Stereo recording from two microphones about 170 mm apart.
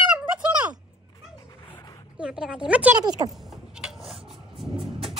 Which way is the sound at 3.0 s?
20° right (ahead or behind).